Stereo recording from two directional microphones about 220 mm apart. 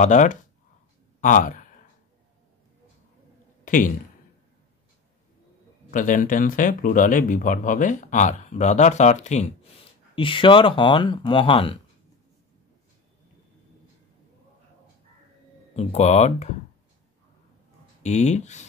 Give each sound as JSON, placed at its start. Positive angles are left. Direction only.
{"t": 0.0, "sound": "speech", "side_deg": 35}
{"t": 3.6, "sound": "speech", "side_deg": 35}
{"t": 5.9, "sound": "speech", "side_deg": 40}
{"t": 15.7, "sound": "speech", "side_deg": 30}
{"t": 18.0, "sound": "speech", "side_deg": 30}